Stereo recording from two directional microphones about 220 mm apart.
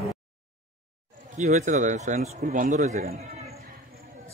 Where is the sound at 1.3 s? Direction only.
30° right (ahead or behind).